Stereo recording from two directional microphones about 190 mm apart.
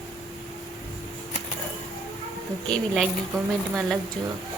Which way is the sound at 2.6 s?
Centre (ahead or behind).